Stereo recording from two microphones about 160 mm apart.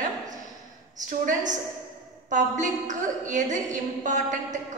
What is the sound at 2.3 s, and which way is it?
A woman's voice, 50° right (ahead or behind).